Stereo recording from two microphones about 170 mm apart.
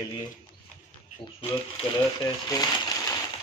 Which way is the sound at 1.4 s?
30° left (ahead or behind).